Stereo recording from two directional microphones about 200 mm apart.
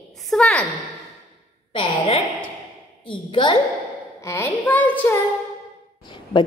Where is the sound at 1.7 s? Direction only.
30° left (ahead or behind).